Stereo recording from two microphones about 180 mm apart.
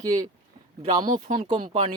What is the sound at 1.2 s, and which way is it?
Speech, 45° right (ahead or behind).